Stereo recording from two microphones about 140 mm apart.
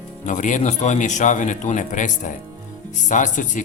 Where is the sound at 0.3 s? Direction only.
65° left (ahead or behind).